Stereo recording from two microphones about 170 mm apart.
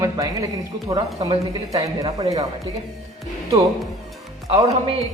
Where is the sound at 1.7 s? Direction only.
20° right (ahead or behind).